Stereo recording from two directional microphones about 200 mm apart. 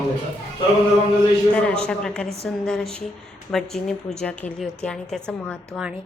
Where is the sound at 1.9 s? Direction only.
5° left (ahead or behind).